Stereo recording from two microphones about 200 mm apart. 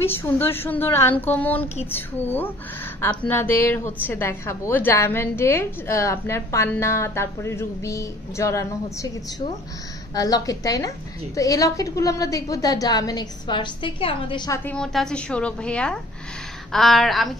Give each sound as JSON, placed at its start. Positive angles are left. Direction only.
{"t": 0.0, "sound": "a woman's voice", "side_deg": 10}
{"t": 10.1, "sound": "a woman's voice", "side_deg": 20}
{"t": 14.6, "sound": "a woman's voice", "side_deg": 5}